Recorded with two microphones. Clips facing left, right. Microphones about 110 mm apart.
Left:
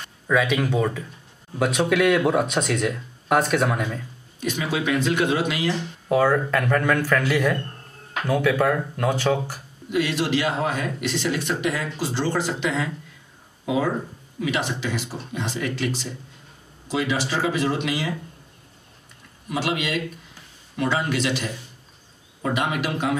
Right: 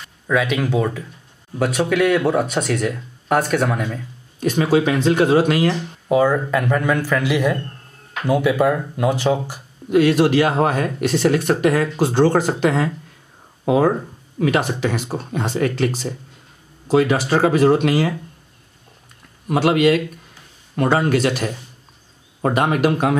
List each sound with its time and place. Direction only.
0.0 s speech: centre (ahead or behind)
4.4 s speech: 45° right (ahead or behind)
6.0 s speech: 5° right (ahead or behind)
9.8 s speech: 50° right (ahead or behind)
19.5 s speech: 50° right (ahead or behind)